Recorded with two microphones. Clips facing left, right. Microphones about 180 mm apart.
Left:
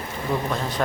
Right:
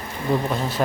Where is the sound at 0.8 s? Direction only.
15° right (ahead or behind).